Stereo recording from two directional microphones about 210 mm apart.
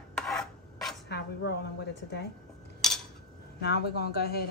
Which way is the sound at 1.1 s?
50° left (ahead or behind).